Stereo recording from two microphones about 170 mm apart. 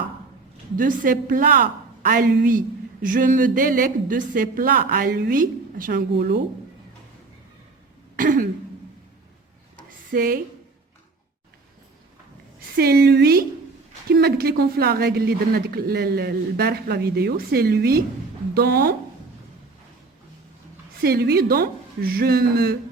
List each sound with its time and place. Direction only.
0.8 s a woman's voice: 50° right (ahead or behind)
8.1 s throat clearing: 55° right (ahead or behind)
10.1 s a woman's voice: 60° right (ahead or behind)
12.5 s a woman's voice: 65° right (ahead or behind)
21.0 s a woman's voice: 65° right (ahead or behind)